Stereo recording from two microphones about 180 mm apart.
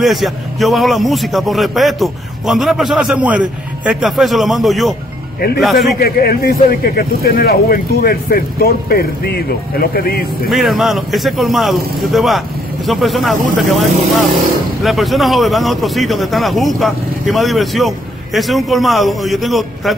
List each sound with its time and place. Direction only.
0.0 s speech: centre (ahead or behind)
5.9 s speech: 60° left (ahead or behind)
10.5 s speech: centre (ahead or behind)